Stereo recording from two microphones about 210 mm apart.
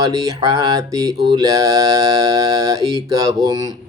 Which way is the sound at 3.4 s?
20° right (ahead or behind).